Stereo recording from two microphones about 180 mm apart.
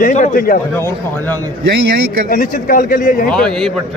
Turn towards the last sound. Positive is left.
turn(degrees=5)  # may be behind; listen again after turning